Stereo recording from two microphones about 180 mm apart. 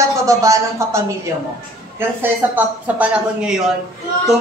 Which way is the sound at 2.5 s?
5° right (ahead or behind).